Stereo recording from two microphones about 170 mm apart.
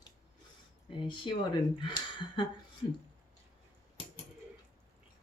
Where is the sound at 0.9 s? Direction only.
30° left (ahead or behind).